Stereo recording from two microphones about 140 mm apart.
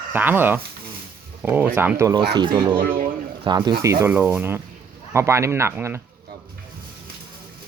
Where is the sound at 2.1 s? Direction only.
30° right (ahead or behind).